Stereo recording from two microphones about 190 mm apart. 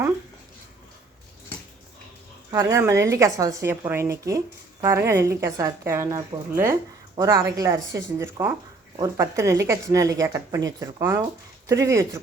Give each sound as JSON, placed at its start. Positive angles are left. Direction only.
{"t": 2.5, "sound": "a woman's voice", "side_deg": -15}